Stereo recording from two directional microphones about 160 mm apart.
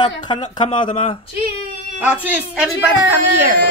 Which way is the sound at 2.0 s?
10° right (ahead or behind).